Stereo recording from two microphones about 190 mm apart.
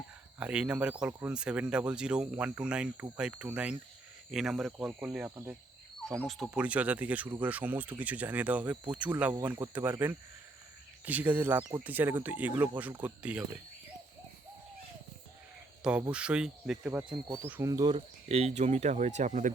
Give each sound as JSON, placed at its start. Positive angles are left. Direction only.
{"t": 0.3, "sound": "speech", "side_deg": -5}
{"t": 11.0, "sound": "speech", "side_deg": -10}
{"t": 15.8, "sound": "speech", "side_deg": -5}
{"t": 18.3, "sound": "speech", "side_deg": -35}